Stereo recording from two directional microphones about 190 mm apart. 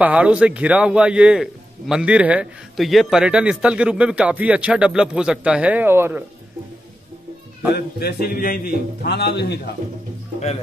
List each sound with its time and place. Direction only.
0.0 s a man's voice: 5° right (ahead or behind)
7.7 s a man's voice: 55° left (ahead or behind)